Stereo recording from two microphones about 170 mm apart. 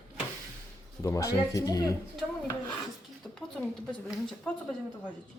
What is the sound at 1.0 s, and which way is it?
Speech, 20° left (ahead or behind).